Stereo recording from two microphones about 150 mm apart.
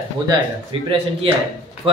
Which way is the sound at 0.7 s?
35° right (ahead or behind).